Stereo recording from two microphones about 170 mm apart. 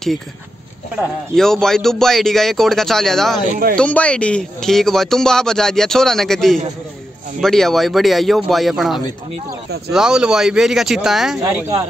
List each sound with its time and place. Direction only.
0.9 s speech: 5° left (ahead or behind)